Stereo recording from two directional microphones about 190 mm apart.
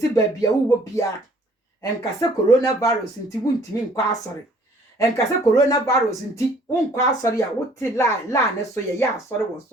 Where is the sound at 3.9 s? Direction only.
20° left (ahead or behind).